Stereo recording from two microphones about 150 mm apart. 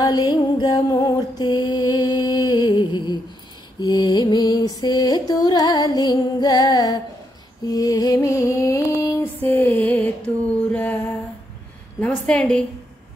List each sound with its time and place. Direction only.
0.0 s music: 25° left (ahead or behind)
7.6 s a sound: 25° left (ahead or behind)
9.4 s music: 15° left (ahead or behind)
12.0 s a woman's voice: 5° left (ahead or behind)